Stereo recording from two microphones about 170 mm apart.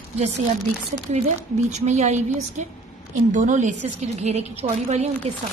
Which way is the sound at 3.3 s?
50° right (ahead or behind).